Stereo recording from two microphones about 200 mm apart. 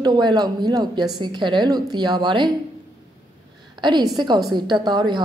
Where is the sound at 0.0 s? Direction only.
20° right (ahead or behind).